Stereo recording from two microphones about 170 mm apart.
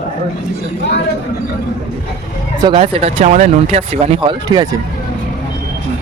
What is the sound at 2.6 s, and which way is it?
Speech, 30° right (ahead or behind).